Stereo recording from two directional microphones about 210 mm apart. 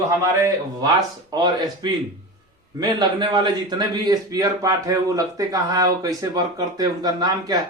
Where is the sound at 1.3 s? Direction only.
20° right (ahead or behind).